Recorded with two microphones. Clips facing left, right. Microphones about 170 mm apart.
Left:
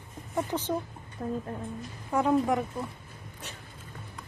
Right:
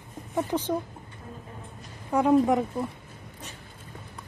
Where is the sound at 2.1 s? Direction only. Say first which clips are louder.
Right 4 dB; 20° right (ahead or behind).